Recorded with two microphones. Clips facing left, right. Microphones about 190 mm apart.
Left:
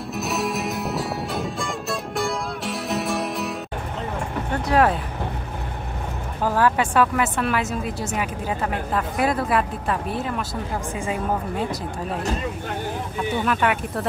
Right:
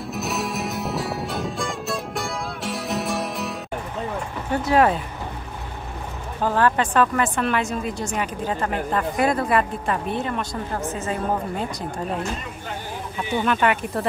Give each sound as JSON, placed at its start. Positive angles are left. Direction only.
{"t": 0.1, "sound": "music", "side_deg": 0}
{"t": 4.6, "sound": "speech", "side_deg": 0}
{"t": 6.4, "sound": "speech", "side_deg": 5}
{"t": 13.5, "sound": "speech", "side_deg": 0}